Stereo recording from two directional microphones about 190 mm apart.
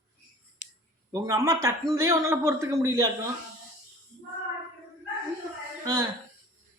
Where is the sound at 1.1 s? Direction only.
15° right (ahead or behind).